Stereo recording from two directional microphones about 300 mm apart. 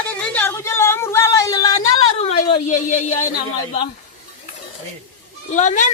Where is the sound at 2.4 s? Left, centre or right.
Left.